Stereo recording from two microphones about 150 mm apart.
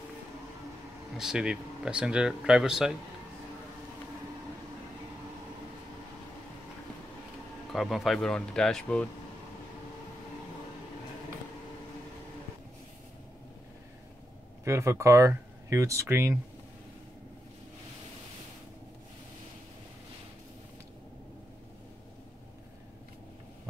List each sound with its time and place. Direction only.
1.1 s speech: 5° right (ahead or behind)
7.7 s speech: centre (ahead or behind)
14.6 s speech: 20° right (ahead or behind)